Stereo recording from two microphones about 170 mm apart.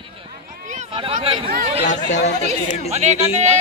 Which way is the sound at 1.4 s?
50° right (ahead or behind).